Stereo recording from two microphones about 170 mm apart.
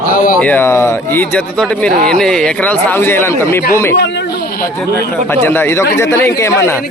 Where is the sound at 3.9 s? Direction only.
90° left.